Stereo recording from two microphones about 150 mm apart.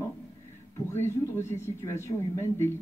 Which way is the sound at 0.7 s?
15° left (ahead or behind).